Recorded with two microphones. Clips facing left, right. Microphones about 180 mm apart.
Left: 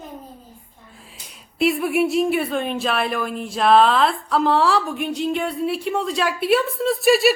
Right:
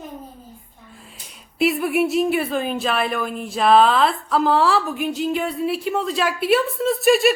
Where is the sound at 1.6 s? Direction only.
Centre (ahead or behind).